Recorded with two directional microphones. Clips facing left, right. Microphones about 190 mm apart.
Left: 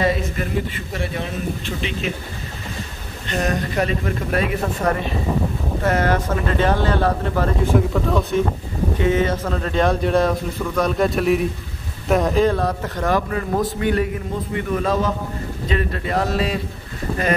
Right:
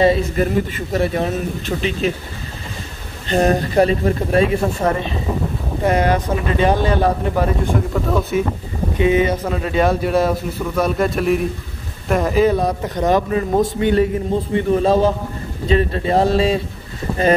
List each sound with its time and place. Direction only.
0.0 s speech: 30° right (ahead or behind)
0.7 s a man's voice: 40° right (ahead or behind)
3.3 s a man's voice: 30° right (ahead or behind); by 7.5 s 15° right (ahead or behind)
7.6 s speech: centre (ahead or behind)
9.0 s a man's voice: 15° right (ahead or behind)